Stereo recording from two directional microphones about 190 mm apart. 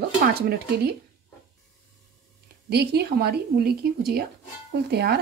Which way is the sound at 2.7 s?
60° right (ahead or behind).